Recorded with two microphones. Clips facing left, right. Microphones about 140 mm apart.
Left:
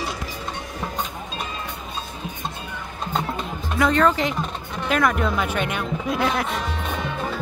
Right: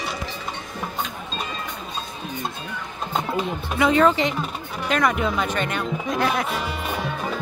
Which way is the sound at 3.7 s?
5° right (ahead or behind).